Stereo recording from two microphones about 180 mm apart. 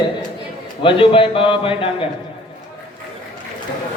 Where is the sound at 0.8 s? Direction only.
30° left (ahead or behind).